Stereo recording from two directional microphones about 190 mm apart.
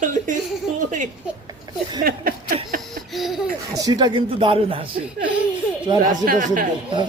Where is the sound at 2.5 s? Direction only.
30° right (ahead or behind).